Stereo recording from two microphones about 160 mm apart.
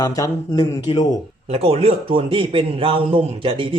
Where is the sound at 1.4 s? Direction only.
40° right (ahead or behind).